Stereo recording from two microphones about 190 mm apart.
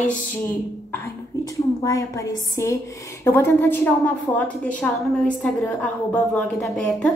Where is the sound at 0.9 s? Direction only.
15° left (ahead or behind).